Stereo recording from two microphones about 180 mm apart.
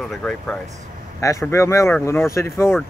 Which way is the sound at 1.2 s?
15° left (ahead or behind).